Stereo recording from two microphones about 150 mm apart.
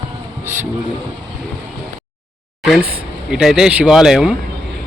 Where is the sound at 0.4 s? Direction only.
15° right (ahead or behind).